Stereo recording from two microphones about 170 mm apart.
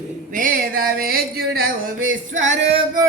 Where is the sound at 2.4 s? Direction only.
45° right (ahead or behind).